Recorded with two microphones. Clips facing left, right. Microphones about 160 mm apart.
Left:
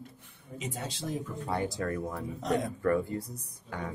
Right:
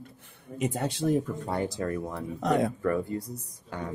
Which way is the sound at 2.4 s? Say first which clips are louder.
Right 5 dB; 65° right (ahead or behind).